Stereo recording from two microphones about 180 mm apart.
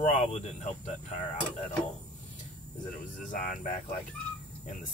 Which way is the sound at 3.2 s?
45° left (ahead or behind).